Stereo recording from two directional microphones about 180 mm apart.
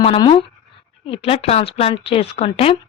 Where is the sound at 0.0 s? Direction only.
30° left (ahead or behind).